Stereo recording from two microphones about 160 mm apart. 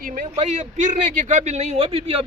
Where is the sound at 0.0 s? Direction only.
55° right (ahead or behind).